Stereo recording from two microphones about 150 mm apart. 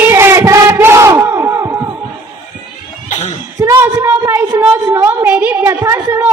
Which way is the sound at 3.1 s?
50° left (ahead or behind).